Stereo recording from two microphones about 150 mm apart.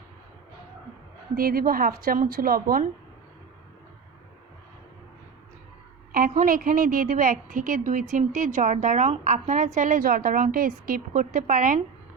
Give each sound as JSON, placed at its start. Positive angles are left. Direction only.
{"t": 1.4, "sound": "a woman's voice", "side_deg": -75}
{"t": 6.1, "sound": "a woman's voice", "side_deg": -70}